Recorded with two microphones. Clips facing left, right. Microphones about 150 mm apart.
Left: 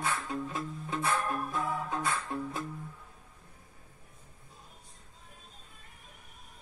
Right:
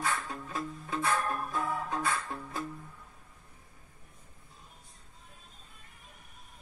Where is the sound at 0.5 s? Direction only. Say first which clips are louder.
Even; 20° left (ahead or behind).